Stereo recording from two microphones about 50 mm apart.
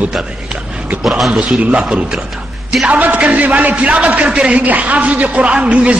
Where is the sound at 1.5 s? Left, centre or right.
Right.